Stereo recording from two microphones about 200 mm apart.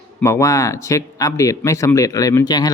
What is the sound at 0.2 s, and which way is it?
Speech, 15° left (ahead or behind).